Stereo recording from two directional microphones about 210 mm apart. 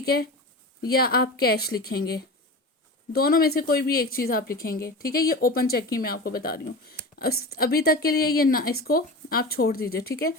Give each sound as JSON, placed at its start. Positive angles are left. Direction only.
{"t": 0.0, "sound": "a woman's voice", "side_deg": 45}